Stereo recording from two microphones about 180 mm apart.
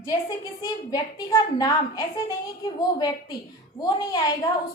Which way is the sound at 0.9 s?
20° left (ahead or behind).